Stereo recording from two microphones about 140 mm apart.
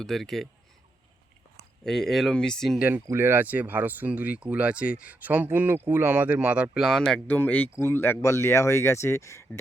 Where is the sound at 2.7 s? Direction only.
10° right (ahead or behind).